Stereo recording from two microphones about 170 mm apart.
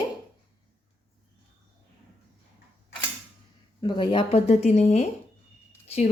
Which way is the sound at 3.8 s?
25° left (ahead or behind).